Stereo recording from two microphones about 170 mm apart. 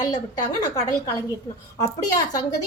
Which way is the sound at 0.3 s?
20° left (ahead or behind).